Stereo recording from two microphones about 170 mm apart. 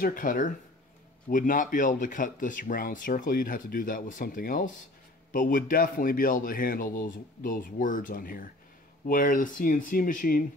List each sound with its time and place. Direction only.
0.0 s a man's voice: 55° left (ahead or behind)